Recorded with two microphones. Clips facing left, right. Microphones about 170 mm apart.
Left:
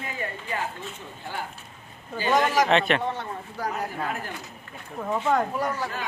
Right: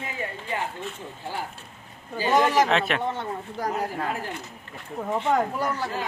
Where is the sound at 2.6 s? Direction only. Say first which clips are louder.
Left 2 dB; centre (ahead or behind).